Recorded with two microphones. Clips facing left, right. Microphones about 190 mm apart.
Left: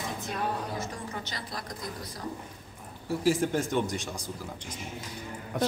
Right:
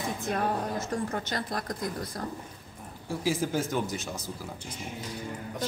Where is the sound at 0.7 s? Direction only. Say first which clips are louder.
Right 5 dB; 50° right (ahead or behind).